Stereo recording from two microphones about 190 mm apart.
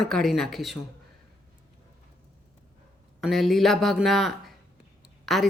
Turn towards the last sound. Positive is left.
turn(degrees=0)  # may be behind; listen again after turning